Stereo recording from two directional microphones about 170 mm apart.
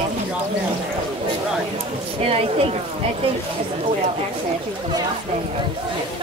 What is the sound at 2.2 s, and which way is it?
Speech, 35° right (ahead or behind).